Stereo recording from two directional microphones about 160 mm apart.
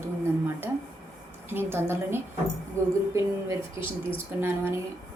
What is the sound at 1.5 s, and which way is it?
A woman's voice, 15° right (ahead or behind).